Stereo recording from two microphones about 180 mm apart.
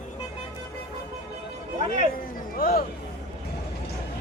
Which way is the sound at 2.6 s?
55° left (ahead or behind).